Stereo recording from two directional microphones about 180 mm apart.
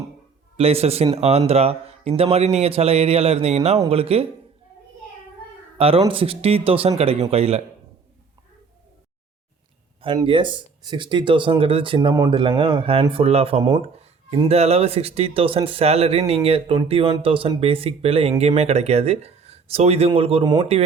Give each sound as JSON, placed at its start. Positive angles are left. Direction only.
{"t": 0.5, "sound": "speech", "side_deg": -35}
{"t": 5.7, "sound": "speech", "side_deg": -30}
{"t": 10.2, "sound": "speech", "side_deg": -25}
{"t": 13.6, "sound": "speech", "side_deg": -20}
{"t": 13.8, "sound": "a sound", "side_deg": -35}
{"t": 14.4, "sound": "speech", "side_deg": -35}